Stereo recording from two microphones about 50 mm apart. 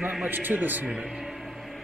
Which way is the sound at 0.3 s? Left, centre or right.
Right.